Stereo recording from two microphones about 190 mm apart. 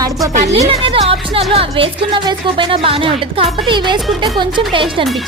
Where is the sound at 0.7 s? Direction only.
30° right (ahead or behind).